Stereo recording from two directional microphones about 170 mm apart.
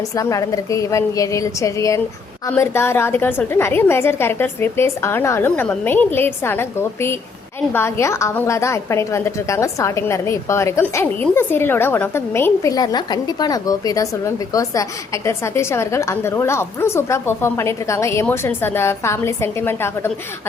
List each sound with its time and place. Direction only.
0.1 s a woman's voice: 20° left (ahead or behind)